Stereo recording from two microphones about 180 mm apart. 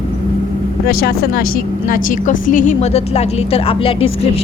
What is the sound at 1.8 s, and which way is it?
A woman's voice, 45° left (ahead or behind).